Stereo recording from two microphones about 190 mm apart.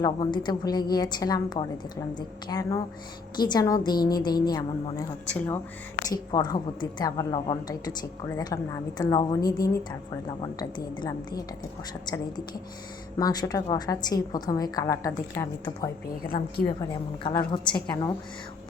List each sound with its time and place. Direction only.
0.0 s a woman's voice: 25° left (ahead or behind)
13.1 s a woman's voice: 20° left (ahead or behind)
16.2 s a woman's voice: 50° left (ahead or behind)
17.2 s a woman's voice: 25° left (ahead or behind)